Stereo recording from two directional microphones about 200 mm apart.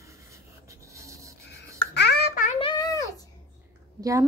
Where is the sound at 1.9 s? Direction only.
55° left (ahead or behind).